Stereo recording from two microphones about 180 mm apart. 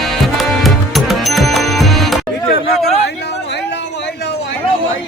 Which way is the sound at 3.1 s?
70° left (ahead or behind).